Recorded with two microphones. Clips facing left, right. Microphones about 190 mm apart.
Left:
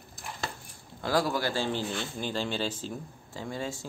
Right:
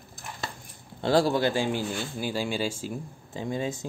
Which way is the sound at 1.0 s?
30° right (ahead or behind).